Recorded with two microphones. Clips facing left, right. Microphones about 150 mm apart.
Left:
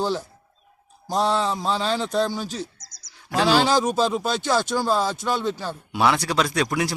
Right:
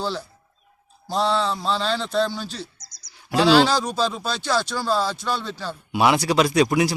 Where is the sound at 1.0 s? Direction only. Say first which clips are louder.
Even; 45° left (ahead or behind).